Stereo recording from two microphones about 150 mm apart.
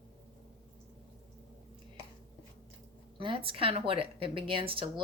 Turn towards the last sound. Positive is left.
turn(degrees=-35)  # may be behind; listen again after turning